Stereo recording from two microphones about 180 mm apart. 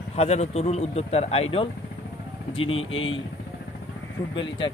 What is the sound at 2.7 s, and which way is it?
Speech, 90° left.